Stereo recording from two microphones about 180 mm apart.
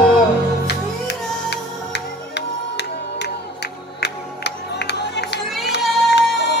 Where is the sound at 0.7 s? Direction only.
70° left (ahead or behind).